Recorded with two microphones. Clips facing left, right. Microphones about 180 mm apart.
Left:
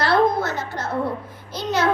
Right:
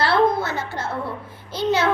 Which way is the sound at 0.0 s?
30° right (ahead or behind).